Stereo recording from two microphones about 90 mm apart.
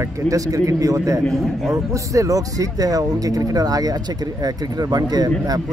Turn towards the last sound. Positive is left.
turn(degrees=-45)  # may be behind; listen again after turning